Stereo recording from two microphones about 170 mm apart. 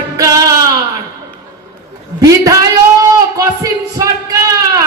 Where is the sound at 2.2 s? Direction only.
20° right (ahead or behind).